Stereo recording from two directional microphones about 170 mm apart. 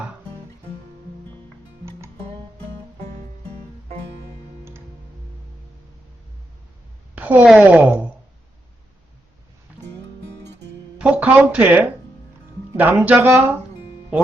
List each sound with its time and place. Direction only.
1.8 s music: 15° right (ahead or behind)
7.2 s speech: 10° right (ahead or behind)
10.9 s speech: 5° right (ahead or behind)